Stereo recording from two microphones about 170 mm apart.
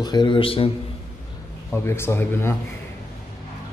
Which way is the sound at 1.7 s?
15° left (ahead or behind).